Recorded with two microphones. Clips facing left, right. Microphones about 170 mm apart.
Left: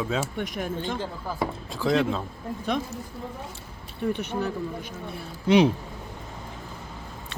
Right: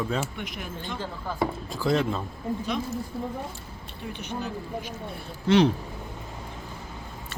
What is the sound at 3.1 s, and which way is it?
Speech, 25° right (ahead or behind).